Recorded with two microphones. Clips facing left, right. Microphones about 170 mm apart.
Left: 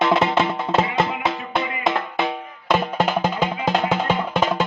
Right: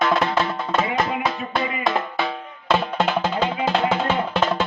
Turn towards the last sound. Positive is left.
turn(degrees=10)  # may be behind; listen again after turning